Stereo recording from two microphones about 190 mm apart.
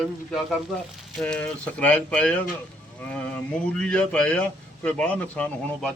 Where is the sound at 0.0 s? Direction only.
Centre (ahead or behind).